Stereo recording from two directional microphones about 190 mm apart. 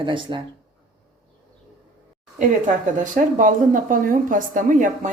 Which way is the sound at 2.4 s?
40° right (ahead or behind).